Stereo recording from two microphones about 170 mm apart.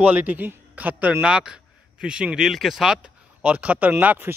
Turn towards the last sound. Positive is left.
turn(degrees=-10)  # may be behind; listen again after turning